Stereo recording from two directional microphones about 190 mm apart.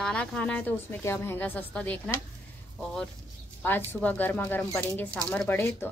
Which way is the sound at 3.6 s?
10° left (ahead or behind).